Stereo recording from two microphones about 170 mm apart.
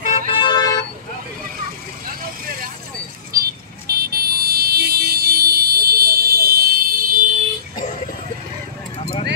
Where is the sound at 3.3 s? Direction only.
60° right (ahead or behind).